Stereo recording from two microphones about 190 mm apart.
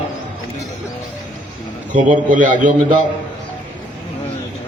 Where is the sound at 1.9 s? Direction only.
40° right (ahead or behind).